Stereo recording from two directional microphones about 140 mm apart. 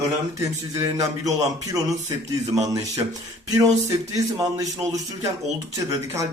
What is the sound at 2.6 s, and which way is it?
Speech, 25° right (ahead or behind).